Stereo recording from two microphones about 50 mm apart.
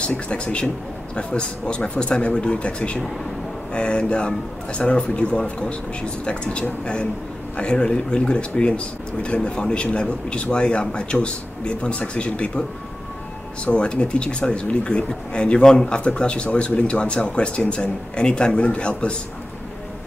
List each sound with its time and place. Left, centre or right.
0.1 s speech: left
13.7 s speech: left